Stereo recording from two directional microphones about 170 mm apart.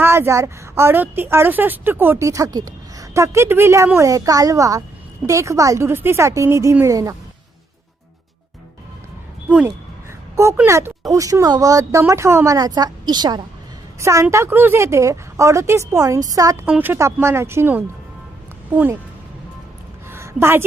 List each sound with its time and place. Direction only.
0.0 s a woman's voice: 15° right (ahead or behind)
9.5 s a woman's voice: 10° right (ahead or behind)
20.1 s a sound: 15° right (ahead or behind)